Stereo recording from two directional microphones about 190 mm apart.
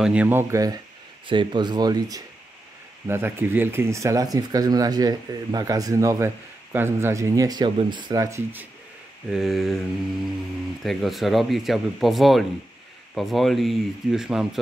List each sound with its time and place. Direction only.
0.0 s speech: 5° right (ahead or behind)
9.3 s speech: centre (ahead or behind)
10.8 s speech: centre (ahead or behind)